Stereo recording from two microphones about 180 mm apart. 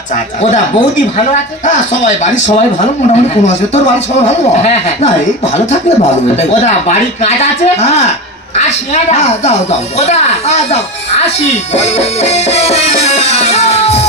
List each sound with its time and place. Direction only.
1.7 s a woman's voice: 40° left (ahead or behind)